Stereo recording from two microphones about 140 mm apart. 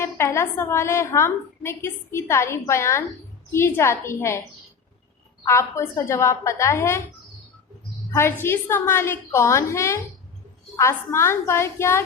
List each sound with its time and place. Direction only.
0.0 s a woman's voice: 20° left (ahead or behind)
5.5 s a woman's voice: 20° left (ahead or behind)
8.1 s a woman's voice: 15° left (ahead or behind)